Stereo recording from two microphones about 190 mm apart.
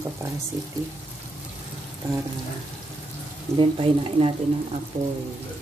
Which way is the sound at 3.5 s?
30° right (ahead or behind).